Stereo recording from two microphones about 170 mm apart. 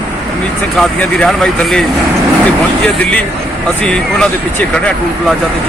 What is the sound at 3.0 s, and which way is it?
Speech, 10° left (ahead or behind).